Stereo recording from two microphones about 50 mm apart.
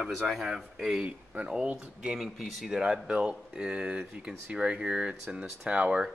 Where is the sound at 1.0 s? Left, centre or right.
Right.